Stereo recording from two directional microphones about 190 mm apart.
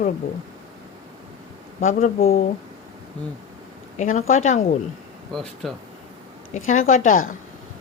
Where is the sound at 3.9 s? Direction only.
45° left (ahead or behind).